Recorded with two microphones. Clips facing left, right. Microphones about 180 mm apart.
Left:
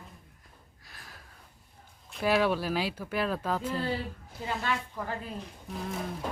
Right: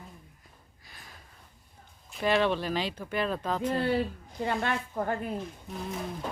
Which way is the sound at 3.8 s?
65° right (ahead or behind).